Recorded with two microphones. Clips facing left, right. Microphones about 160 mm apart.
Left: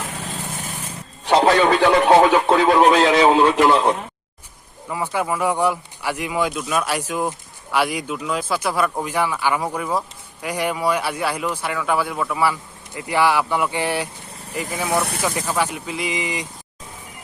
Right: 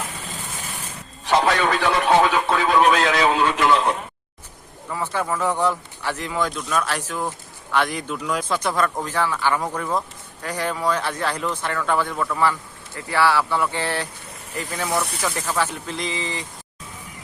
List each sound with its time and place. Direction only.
1.3 s a sound: 25° left (ahead or behind)
2.0 s a man's voice: 40° left (ahead or behind)
2.9 s a man's voice: 30° left (ahead or behind)
4.9 s speech: 15° left (ahead or behind)